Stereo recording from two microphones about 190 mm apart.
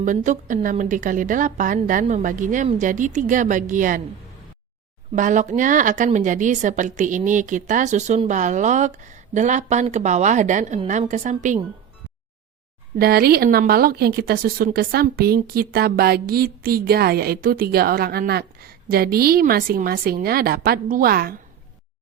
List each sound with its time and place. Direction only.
0.0 s speech: 40° right (ahead or behind)
5.1 s a woman's voice: 40° right (ahead or behind)
13.0 s speech: 55° right (ahead or behind)